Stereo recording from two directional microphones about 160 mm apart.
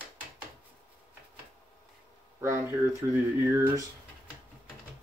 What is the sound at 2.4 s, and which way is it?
Speech, 20° right (ahead or behind).